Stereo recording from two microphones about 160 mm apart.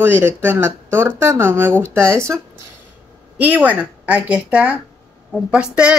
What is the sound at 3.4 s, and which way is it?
A man's voice, 10° right (ahead or behind).